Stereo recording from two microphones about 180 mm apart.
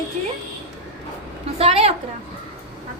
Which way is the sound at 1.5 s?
35° right (ahead or behind).